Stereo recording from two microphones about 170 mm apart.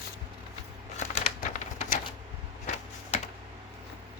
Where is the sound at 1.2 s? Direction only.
40° left (ahead or behind).